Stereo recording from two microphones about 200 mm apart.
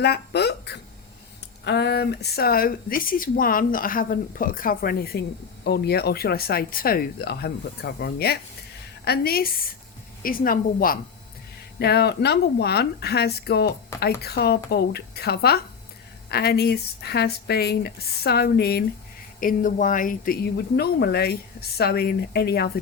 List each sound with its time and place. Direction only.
0.0 s speech: 55° left (ahead or behind)